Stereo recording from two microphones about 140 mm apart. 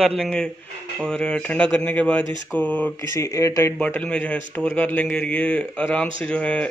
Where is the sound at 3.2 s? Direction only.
20° left (ahead or behind).